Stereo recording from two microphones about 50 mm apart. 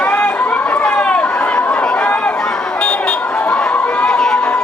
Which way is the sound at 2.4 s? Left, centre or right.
Centre.